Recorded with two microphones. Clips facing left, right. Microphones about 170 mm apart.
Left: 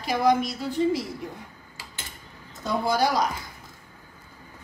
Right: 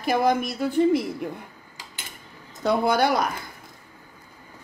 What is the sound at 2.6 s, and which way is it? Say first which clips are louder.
Speech: right 3 dB; 65° right (ahead or behind).